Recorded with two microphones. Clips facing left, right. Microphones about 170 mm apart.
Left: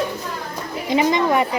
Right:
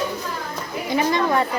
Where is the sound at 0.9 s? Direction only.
20° left (ahead or behind).